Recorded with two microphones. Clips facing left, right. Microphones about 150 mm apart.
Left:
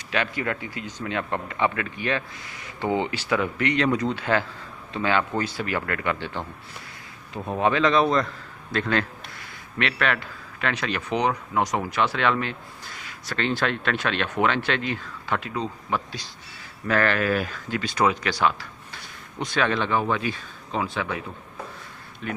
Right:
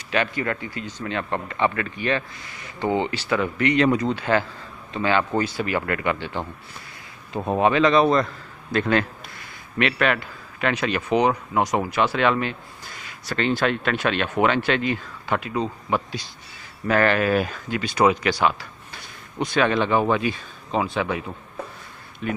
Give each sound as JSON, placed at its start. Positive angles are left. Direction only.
{"t": 0.1, "sound": "speech", "side_deg": 0}
{"t": 7.3, "sound": "speech", "side_deg": -35}
{"t": 7.6, "sound": "speech", "side_deg": -5}
{"t": 22.2, "sound": "speech", "side_deg": -10}